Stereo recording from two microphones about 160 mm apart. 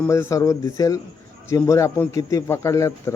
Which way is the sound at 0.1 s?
20° left (ahead or behind).